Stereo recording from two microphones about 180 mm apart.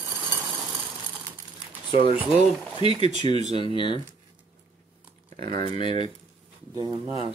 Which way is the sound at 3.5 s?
30° left (ahead or behind).